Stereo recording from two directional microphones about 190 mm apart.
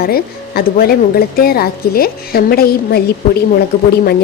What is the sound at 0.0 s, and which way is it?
Speech, 55° left (ahead or behind).